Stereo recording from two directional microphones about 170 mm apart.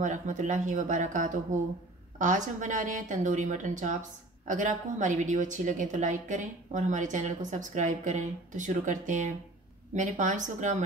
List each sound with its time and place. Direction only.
0.0 s a woman's voice: 45° right (ahead or behind)